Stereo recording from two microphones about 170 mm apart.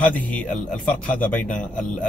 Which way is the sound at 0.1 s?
10° left (ahead or behind).